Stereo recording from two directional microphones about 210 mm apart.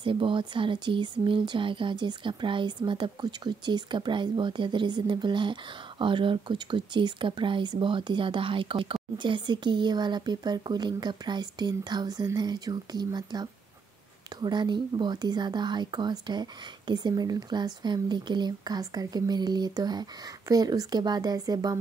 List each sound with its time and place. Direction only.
0.0 s speech: 25° right (ahead or behind)